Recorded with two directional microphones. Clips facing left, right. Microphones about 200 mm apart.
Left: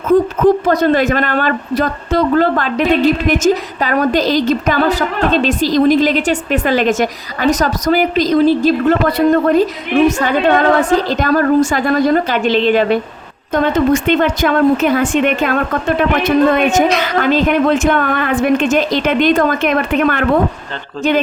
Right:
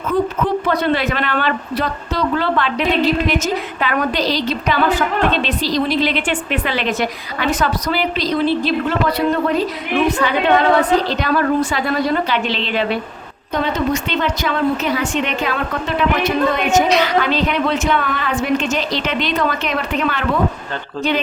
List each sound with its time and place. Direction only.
0.1 s speech: 45° left (ahead or behind)